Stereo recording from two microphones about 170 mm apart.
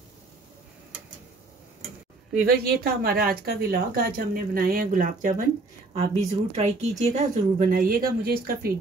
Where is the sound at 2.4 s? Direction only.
65° right (ahead or behind).